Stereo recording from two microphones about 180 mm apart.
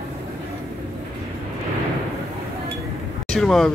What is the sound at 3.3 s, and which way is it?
Speech, 5° left (ahead or behind).